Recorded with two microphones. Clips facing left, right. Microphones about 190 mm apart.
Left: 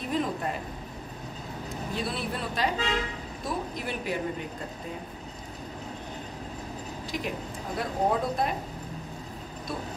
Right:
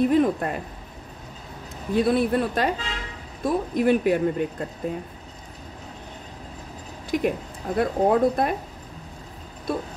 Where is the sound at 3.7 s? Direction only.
55° right (ahead or behind).